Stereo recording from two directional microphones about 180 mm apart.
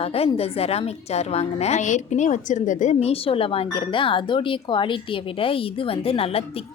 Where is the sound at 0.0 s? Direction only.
35° left (ahead or behind).